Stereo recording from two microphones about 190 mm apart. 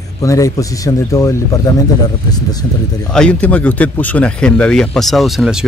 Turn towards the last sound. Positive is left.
turn(degrees=0)  # may be behind; listen again after turning